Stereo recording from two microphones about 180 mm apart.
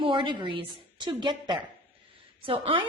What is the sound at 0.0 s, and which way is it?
A woman's voice, 30° right (ahead or behind).